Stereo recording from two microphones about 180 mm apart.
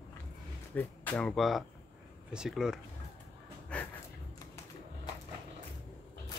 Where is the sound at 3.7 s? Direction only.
5° left (ahead or behind).